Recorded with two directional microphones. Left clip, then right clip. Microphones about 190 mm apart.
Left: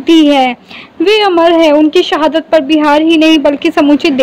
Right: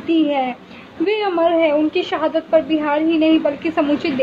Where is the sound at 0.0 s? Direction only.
45° left (ahead or behind).